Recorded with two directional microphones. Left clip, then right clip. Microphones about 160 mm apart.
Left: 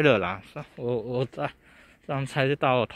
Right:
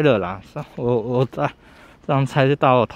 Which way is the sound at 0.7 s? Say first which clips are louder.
Right 8 dB; 20° right (ahead or behind).